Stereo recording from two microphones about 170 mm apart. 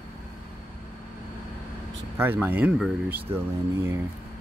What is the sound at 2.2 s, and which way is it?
Speech, 10° right (ahead or behind).